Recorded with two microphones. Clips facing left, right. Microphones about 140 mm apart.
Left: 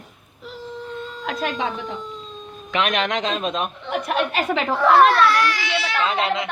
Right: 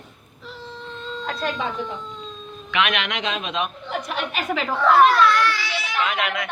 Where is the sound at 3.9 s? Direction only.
60° left (ahead or behind).